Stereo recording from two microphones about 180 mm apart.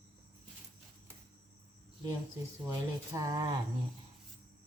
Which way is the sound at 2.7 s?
20° right (ahead or behind).